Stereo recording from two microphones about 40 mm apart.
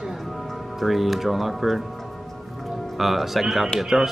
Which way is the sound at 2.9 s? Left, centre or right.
Centre.